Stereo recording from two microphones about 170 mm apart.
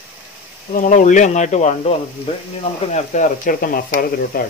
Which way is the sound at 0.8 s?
50° left (ahead or behind).